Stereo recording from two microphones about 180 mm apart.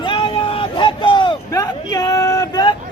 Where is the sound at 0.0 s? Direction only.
25° left (ahead or behind).